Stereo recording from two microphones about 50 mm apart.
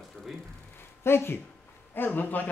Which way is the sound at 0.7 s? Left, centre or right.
Left.